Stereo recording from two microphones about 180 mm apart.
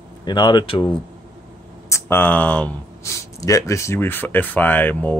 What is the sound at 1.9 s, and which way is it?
Speech, 10° left (ahead or behind).